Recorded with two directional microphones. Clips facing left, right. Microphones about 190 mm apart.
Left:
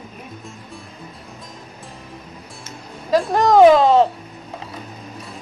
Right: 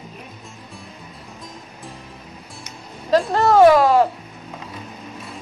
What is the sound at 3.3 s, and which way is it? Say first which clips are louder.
Speech: left 2 dB; 15° left (ahead or behind).